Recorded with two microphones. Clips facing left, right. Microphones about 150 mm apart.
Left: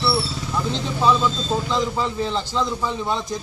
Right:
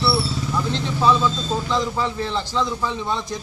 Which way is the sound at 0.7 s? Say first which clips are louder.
Even; 15° left (ahead or behind).